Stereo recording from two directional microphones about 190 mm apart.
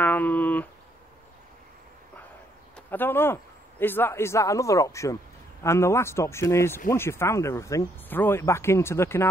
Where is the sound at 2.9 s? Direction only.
10° left (ahead or behind).